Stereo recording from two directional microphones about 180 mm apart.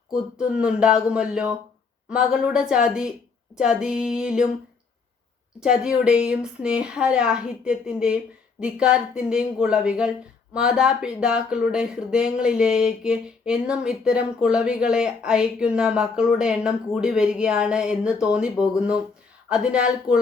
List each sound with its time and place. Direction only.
0.3 s speech: 5° right (ahead or behind)
5.6 s speech: 5° right (ahead or behind)